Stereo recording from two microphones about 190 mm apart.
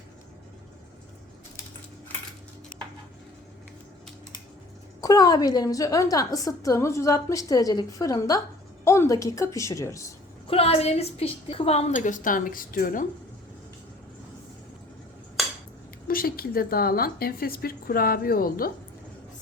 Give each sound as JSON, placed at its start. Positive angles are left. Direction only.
{"t": 4.9, "sound": "a woman's voice", "side_deg": 20}
{"t": 10.4, "sound": "a woman's voice", "side_deg": 30}
{"t": 16.0, "sound": "a woman's voice", "side_deg": 50}